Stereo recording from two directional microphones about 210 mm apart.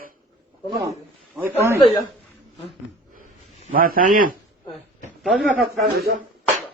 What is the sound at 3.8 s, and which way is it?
Speech, 40° right (ahead or behind).